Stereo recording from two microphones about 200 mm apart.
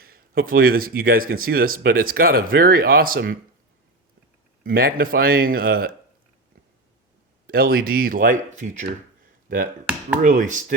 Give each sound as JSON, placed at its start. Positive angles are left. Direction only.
{"t": 0.0, "sound": "speech", "side_deg": -45}
{"t": 4.6, "sound": "speech", "side_deg": -50}
{"t": 7.4, "sound": "speech", "side_deg": -50}
{"t": 10.2, "sound": "speech", "side_deg": -40}